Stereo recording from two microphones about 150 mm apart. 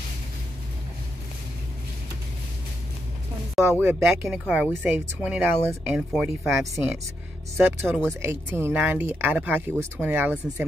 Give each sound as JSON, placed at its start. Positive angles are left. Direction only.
{"t": 3.5, "sound": "speech", "side_deg": -10}
{"t": 6.7, "sound": "speech", "side_deg": -15}
{"t": 8.1, "sound": "speech", "side_deg": -15}